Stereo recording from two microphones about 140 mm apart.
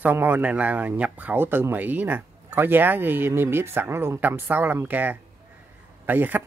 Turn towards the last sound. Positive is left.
turn(degrees=-15)  # may be behind; listen again after turning